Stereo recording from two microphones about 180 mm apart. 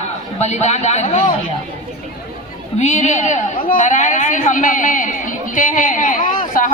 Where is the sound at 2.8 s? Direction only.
40° left (ahead or behind).